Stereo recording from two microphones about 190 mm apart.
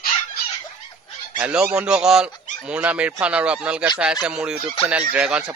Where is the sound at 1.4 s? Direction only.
5° right (ahead or behind).